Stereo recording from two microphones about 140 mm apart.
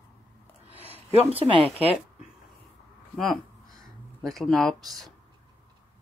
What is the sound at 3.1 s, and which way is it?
Speech, centre (ahead or behind).